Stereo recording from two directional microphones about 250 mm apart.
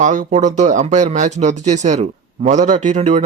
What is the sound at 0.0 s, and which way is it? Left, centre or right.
Speech, right.